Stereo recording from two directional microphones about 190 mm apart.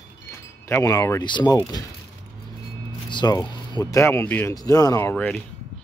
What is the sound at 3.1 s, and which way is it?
Speech, 20° left (ahead or behind).